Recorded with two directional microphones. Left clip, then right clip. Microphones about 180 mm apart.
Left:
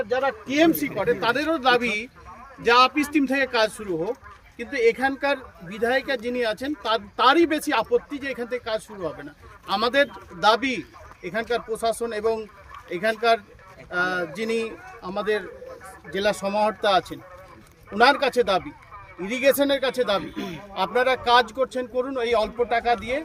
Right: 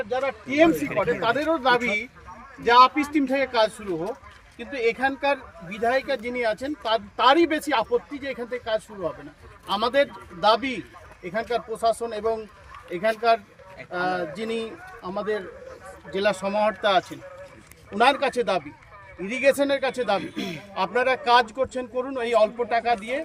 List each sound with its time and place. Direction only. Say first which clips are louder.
0.3 s a man's voice: right 2 dB; 30° left (ahead or behind)
9.8 s a man's voice: left 1 dB; 30° left (ahead or behind)
12.9 s speech: even; 25° left (ahead or behind)
17.9 s speech: left 2 dB; centre (ahead or behind)
20.3 s speech: right 1 dB; 65° right (ahead or behind)
20.7 s speech: left 1 dB; 10° right (ahead or behind)